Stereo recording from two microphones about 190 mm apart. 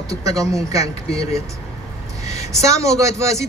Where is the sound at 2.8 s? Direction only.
15° right (ahead or behind).